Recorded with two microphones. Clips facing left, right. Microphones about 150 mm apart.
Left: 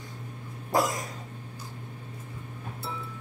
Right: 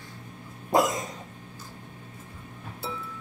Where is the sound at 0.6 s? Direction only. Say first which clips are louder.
Right 3 dB; 20° right (ahead or behind).